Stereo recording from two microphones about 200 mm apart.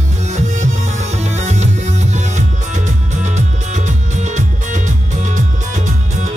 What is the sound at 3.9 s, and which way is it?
Music, 35° right (ahead or behind).